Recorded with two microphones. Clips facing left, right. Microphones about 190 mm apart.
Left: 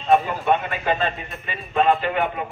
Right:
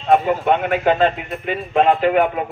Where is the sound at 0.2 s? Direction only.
65° right (ahead or behind).